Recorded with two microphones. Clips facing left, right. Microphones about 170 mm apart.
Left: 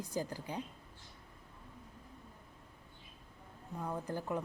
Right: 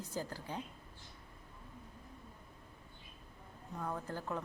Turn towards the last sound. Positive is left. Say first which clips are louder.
# left 3 dB
turn(degrees=15)  # may be behind; listen again after turning